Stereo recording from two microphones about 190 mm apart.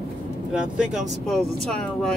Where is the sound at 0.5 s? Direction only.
5° right (ahead or behind).